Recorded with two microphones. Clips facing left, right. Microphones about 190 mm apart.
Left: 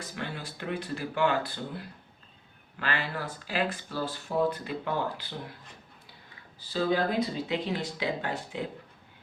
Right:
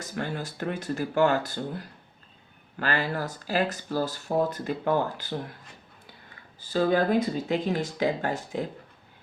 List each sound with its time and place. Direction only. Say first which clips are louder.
0.0 s speech: right 5 dB; 45° right (ahead or behind)
6.6 s speech: right 4 dB; 50° right (ahead or behind)